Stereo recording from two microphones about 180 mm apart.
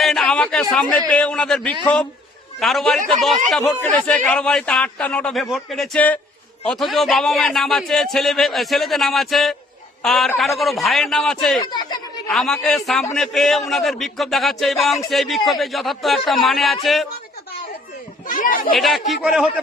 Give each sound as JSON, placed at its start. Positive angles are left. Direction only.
{"t": 0.0, "sound": "a sound", "side_deg": 0}
{"t": 0.7, "sound": "speech", "side_deg": 5}
{"t": 11.6, "sound": "speech", "side_deg": 20}
{"t": 12.3, "sound": "speech", "side_deg": 0}
{"t": 18.3, "sound": "speech", "side_deg": 50}
{"t": 18.7, "sound": "speech", "side_deg": 0}